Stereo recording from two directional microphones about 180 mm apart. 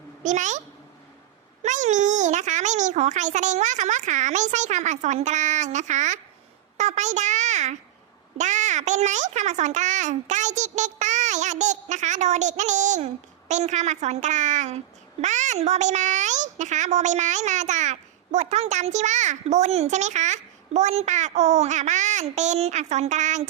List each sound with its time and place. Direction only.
0.2 s a child's voice: 40° right (ahead or behind)
1.6 s a child's voice: 40° right (ahead or behind)